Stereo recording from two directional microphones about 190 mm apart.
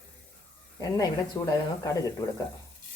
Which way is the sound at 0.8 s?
20° left (ahead or behind).